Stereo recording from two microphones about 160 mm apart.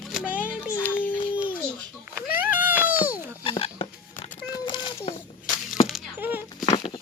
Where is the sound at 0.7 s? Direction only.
10° left (ahead or behind).